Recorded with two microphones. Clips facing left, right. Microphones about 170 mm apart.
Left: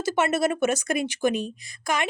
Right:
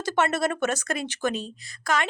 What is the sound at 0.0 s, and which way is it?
Speech, 10° left (ahead or behind).